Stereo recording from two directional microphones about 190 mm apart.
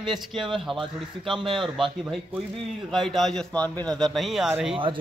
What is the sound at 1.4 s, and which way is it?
Speech, 25° right (ahead or behind).